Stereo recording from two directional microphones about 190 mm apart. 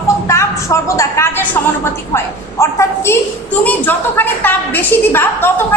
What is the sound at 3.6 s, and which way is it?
A woman's voice, 10° left (ahead or behind).